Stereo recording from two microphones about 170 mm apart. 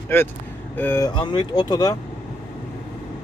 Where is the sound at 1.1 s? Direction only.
30° left (ahead or behind).